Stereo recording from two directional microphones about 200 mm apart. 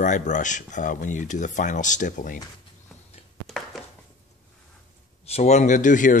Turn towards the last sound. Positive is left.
turn(degrees=40)  # may be behind; listen again after turning